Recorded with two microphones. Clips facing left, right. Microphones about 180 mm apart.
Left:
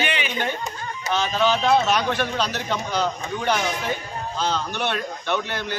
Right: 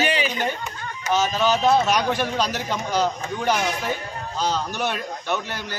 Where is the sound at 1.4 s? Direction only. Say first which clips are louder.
Left 1 dB; 10° right (ahead or behind).